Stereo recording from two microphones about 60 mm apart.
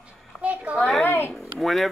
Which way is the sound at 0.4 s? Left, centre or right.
Right.